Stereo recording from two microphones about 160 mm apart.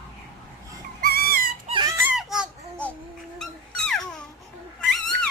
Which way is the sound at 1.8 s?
20° right (ahead or behind).